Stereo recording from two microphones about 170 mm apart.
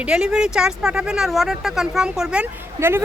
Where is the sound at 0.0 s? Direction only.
5° right (ahead or behind).